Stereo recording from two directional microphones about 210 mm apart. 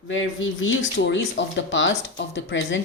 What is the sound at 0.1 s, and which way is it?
Speech, 65° left (ahead or behind).